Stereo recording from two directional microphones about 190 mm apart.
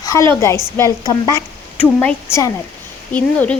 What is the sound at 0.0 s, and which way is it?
A woman's voice, 15° left (ahead or behind).